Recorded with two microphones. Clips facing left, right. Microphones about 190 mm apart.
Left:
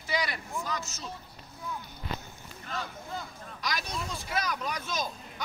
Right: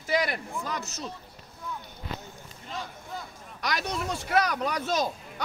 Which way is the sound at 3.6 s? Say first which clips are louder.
Right 5 dB; 70° right (ahead or behind).